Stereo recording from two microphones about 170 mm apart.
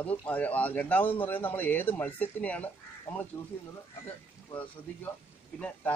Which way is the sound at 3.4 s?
30° left (ahead or behind).